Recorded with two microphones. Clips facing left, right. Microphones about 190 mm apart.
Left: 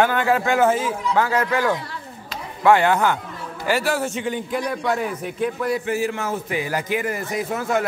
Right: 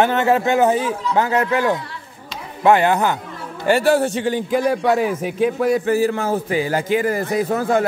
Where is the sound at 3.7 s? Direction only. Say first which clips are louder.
Right 7 dB; 30° right (ahead or behind).